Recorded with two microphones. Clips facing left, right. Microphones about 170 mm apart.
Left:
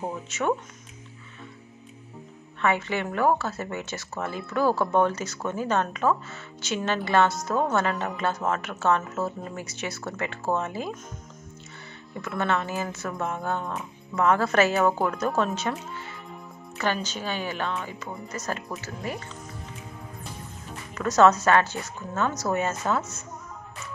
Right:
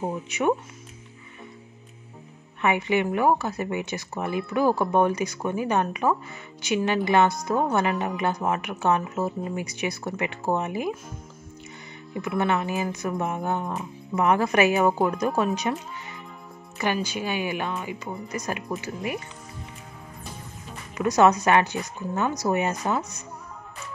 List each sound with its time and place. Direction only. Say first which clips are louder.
0.3 s speech: right 3 dB; 15° right (ahead or behind)
2.6 s speech: right 3 dB; 15° right (ahead or behind)
12.2 s speech: right 2 dB; 15° right (ahead or behind)
16.7 s speech: right 2 dB; 15° right (ahead or behind)
20.9 s speech: even; 15° right (ahead or behind)